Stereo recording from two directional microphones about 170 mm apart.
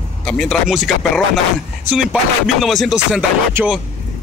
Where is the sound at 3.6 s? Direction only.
15° right (ahead or behind).